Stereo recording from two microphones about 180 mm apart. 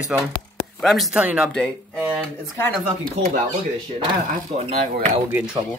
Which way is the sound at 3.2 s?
35° right (ahead or behind).